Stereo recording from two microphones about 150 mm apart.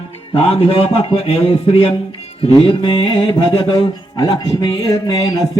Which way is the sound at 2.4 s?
35° left (ahead or behind).